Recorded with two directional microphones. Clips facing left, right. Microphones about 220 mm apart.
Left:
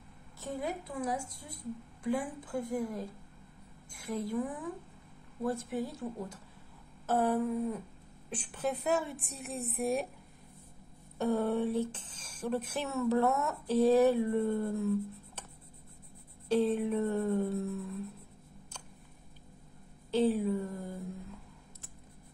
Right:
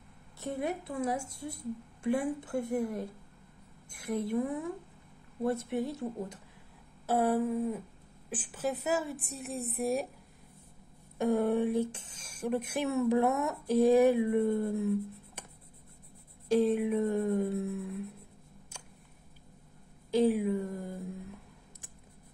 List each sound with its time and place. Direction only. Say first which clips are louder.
0.4 s a woman's voice: right 3 dB; 25° right (ahead or behind)
7.1 s a woman's voice: right 1 dB; 10° right (ahead or behind)
11.1 s speech: right 2 dB; 15° right (ahead or behind)
16.4 s speech: right 2 dB; 10° right (ahead or behind)
20.1 s speech: right 2 dB; 10° right (ahead or behind)